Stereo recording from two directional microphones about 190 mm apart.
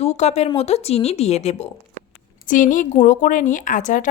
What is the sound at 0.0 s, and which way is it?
A woman's voice, 35° left (ahead or behind).